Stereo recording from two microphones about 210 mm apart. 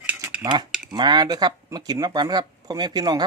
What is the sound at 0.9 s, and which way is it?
Speech, 20° right (ahead or behind).